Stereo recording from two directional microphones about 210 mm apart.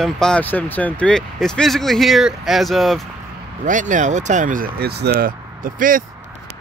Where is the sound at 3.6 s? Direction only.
35° right (ahead or behind).